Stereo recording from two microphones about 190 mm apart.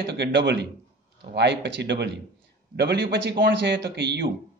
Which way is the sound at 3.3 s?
50° right (ahead or behind).